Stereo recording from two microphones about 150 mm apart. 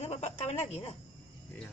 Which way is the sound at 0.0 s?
45° left (ahead or behind).